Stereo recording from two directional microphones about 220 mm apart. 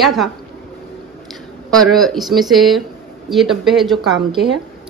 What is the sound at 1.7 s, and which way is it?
A woman's voice, centre (ahead or behind).